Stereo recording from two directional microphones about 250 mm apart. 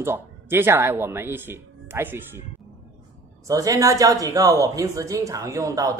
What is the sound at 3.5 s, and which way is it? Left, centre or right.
Speech, centre.